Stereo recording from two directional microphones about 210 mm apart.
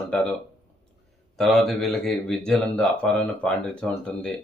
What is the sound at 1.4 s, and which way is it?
Speech, centre (ahead or behind).